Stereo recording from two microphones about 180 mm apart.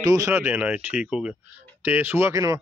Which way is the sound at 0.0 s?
20° right (ahead or behind).